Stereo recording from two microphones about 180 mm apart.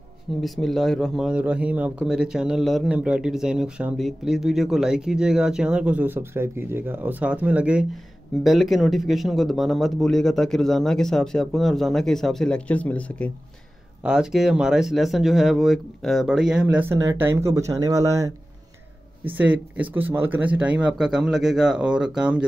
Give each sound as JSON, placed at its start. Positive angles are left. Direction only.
{"t": 0.4, "sound": "a man's voice", "side_deg": 0}
{"t": 14.0, "sound": "a man's voice", "side_deg": -5}